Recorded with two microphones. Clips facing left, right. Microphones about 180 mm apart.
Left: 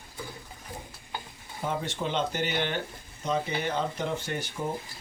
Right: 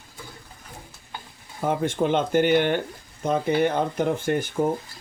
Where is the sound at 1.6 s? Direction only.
50° right (ahead or behind).